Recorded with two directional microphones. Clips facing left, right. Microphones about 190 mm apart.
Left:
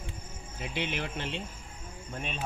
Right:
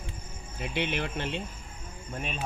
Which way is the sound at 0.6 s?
60° right (ahead or behind).